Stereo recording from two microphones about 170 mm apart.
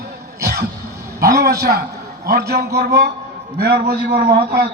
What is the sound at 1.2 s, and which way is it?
A man's voice, 65° right (ahead or behind).